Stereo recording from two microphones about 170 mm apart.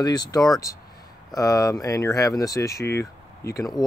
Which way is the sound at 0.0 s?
25° left (ahead or behind).